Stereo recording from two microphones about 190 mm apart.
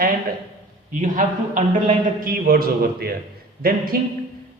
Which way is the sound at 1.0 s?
40° right (ahead or behind).